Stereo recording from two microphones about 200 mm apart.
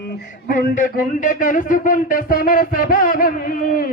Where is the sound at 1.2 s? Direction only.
40° left (ahead or behind).